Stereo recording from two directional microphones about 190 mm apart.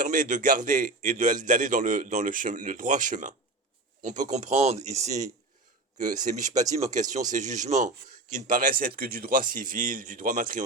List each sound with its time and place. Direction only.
0.0 s a man's voice: 45° right (ahead or behind)